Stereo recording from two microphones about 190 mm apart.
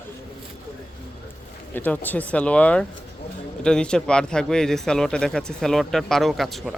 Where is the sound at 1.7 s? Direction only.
10° left (ahead or behind).